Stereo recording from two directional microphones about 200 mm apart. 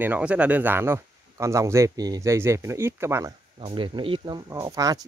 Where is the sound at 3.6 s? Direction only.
25° right (ahead or behind).